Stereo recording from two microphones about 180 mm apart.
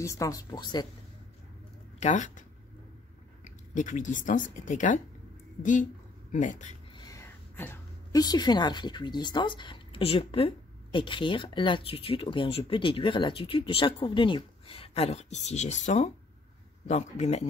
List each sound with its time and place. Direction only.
0.0 s a woman's voice: 15° left (ahead or behind)
2.0 s speech: 40° left (ahead or behind)
3.4 s speech: 45° left (ahead or behind)
7.1 s a woman's voice: 15° left (ahead or behind); by 17.5 s 40° left (ahead or behind)